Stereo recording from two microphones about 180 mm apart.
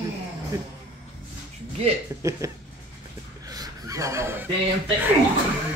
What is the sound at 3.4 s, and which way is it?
Fowl, 20° right (ahead or behind).